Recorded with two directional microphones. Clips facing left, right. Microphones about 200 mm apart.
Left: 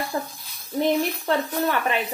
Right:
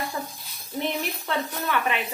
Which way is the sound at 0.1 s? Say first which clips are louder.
Left 4 dB; 50° left (ahead or behind).